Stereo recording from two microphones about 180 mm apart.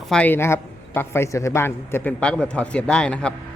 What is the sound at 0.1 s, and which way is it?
A man's voice, 10° left (ahead or behind).